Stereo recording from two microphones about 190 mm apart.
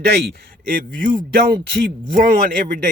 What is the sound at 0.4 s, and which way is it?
Speech, 50° right (ahead or behind).